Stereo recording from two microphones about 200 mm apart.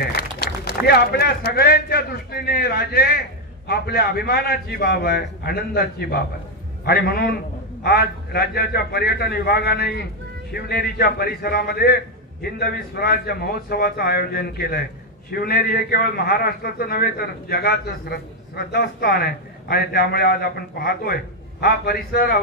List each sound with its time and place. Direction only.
0.0 s a man's voice: 50° left (ahead or behind)